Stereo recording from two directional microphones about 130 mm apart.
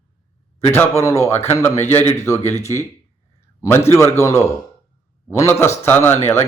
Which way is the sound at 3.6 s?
20° left (ahead or behind).